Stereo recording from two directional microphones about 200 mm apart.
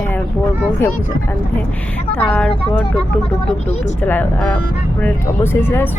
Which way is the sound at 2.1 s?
5° left (ahead or behind).